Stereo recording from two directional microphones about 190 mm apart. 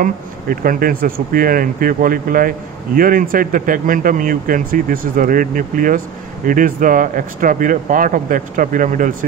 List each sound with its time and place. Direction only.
0.0 s a man's voice: 50° right (ahead or behind)